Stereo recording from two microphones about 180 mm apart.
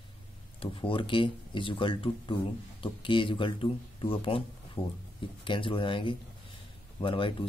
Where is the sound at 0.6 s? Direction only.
30° left (ahead or behind).